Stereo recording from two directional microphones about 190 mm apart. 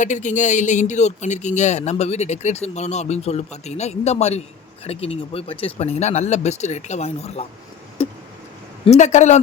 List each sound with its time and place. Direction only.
0.0 s speech: 40° left (ahead or behind)
8.0 s vehicle: 30° left (ahead or behind)
8.8 s speech: 35° left (ahead or behind)